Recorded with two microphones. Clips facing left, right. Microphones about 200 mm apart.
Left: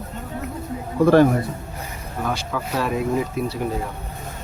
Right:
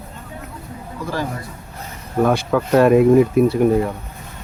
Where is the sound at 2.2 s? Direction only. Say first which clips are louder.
Right 10 dB; 55° right (ahead or behind).